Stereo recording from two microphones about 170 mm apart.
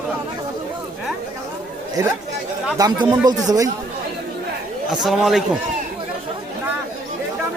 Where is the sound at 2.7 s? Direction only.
20° right (ahead or behind).